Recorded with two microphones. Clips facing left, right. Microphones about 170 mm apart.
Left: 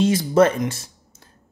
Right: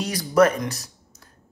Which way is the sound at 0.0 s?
25° left (ahead or behind).